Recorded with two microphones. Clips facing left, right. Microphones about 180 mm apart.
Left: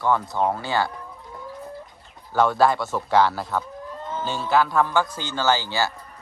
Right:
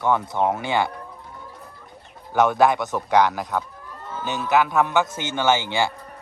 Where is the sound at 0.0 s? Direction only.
20° right (ahead or behind).